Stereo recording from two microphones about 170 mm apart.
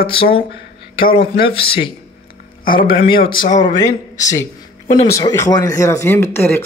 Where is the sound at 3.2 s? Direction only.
55° left (ahead or behind).